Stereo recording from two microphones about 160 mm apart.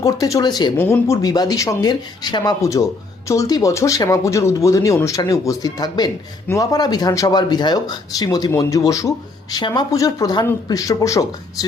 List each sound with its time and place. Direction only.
0.0 s speech: 20° left (ahead or behind)
0.8 s speech: 15° left (ahead or behind)